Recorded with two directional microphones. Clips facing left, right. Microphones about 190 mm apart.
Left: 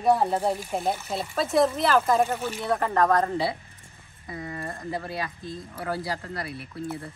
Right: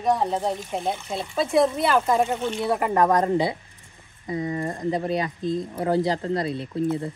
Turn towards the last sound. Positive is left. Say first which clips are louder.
# right 9 dB
turn(degrees=-20)  # may be behind; listen again after turning